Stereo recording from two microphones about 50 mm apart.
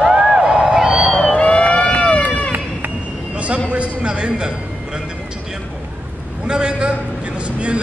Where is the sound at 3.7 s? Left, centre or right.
Right.